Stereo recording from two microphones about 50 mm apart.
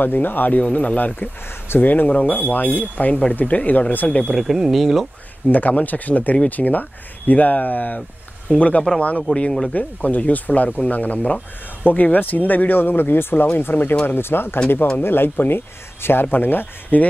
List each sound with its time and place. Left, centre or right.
0.0 s speech: left
0.6 s speech: left
4.3 s speech: centre
5.5 s speech: left
9.3 s speech: centre
9.8 s speech: left